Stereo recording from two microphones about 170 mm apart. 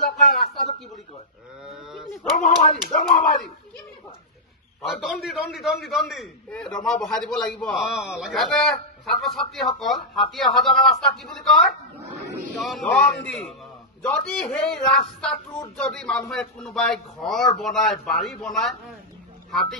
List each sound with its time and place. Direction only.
1.6 s speech: 5° right (ahead or behind)
2.3 s speech: 45° left (ahead or behind)
4.8 s a man's voice: centre (ahead or behind)
14.0 s a man's voice: 10° left (ahead or behind)